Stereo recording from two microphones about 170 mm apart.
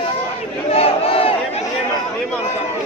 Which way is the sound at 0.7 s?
35° left (ahead or behind).